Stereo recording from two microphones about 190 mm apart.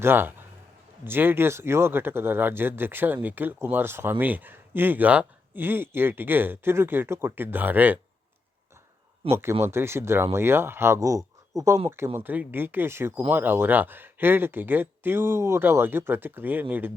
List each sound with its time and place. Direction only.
0.0 s speech: 10° right (ahead or behind)
9.3 s speech: 15° right (ahead or behind)